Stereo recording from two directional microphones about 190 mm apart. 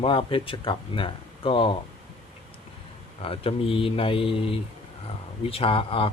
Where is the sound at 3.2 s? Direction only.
30° left (ahead or behind).